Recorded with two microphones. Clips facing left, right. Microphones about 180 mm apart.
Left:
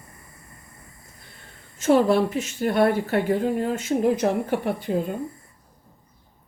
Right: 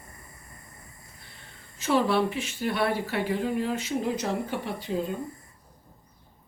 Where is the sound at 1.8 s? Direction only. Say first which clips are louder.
Left 6 dB; 45° left (ahead or behind).